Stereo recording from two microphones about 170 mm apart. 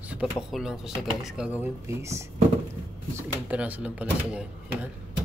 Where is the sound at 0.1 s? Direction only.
5° right (ahead or behind).